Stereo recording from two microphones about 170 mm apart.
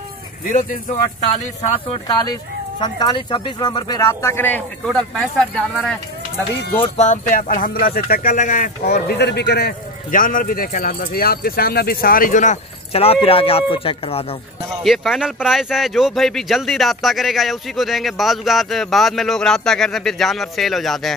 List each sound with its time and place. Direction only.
0.5 s speech: 50° left (ahead or behind)
2.8 s speech: 25° left (ahead or behind); by 5.9 s 5° left (ahead or behind)
7.0 s a man's voice: 50° left (ahead or behind)
8.4 s a man's voice: 50° left (ahead or behind)
14.8 s speech: centre (ahead or behind)